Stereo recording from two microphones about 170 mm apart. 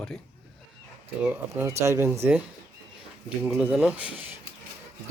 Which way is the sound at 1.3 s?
15° right (ahead or behind).